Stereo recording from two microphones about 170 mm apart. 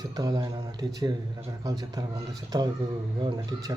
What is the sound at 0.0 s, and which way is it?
Speech, 20° right (ahead or behind).